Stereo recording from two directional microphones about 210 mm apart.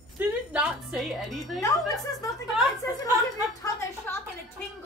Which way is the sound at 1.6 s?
15° left (ahead or behind).